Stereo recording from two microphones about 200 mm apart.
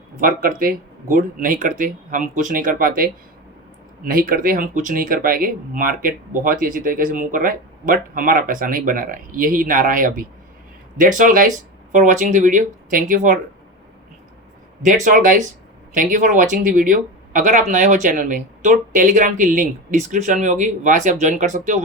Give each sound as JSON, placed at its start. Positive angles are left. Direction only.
{"t": 0.2, "sound": "speech", "side_deg": -45}
{"t": 15.0, "sound": "speech", "side_deg": -40}